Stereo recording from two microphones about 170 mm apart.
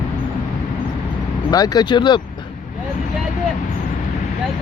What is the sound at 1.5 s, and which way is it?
Speech, 25° left (ahead or behind).